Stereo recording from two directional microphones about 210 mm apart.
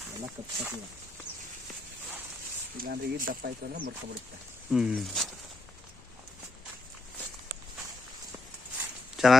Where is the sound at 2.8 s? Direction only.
45° right (ahead or behind).